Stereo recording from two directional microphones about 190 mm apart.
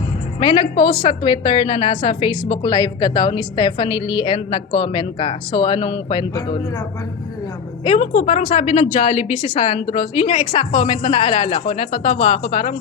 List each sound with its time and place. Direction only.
0.3 s a woman's voice: 25° left (ahead or behind)
7.9 s a woman's voice: 35° left (ahead or behind)
8.8 s a woman's voice: 25° left (ahead or behind)